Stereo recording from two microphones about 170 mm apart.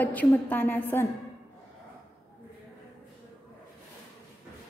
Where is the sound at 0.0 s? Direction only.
10° left (ahead or behind).